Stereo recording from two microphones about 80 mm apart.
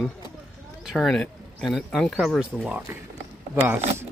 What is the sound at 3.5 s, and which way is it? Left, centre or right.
Speech, right.